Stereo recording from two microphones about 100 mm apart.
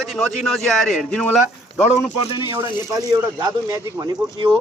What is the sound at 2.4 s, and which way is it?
Speech, 55° left (ahead or behind).